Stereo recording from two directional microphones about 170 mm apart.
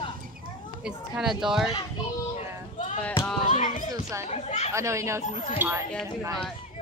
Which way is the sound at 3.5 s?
45° left (ahead or behind).